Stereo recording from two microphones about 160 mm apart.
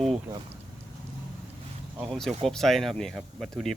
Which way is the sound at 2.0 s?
Centre (ahead or behind).